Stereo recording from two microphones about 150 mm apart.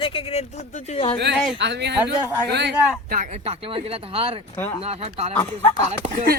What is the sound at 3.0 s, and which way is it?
Speech, 75° right (ahead or behind).